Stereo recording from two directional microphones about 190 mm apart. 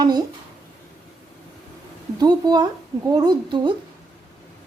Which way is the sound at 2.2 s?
20° right (ahead or behind).